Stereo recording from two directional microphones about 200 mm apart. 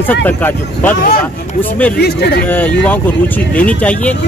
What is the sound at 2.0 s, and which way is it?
Speech, 55° left (ahead or behind).